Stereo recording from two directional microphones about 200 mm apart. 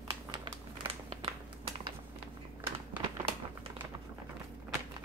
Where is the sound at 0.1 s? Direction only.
20° right (ahead or behind).